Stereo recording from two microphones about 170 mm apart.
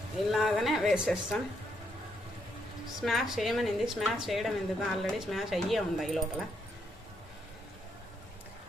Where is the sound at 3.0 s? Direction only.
Centre (ahead or behind).